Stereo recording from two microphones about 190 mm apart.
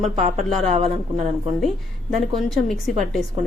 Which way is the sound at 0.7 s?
30° right (ahead or behind).